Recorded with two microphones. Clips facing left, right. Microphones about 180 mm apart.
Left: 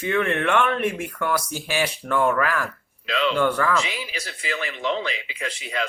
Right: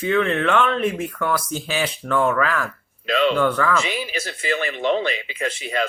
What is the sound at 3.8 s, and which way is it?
Speech, 55° right (ahead or behind).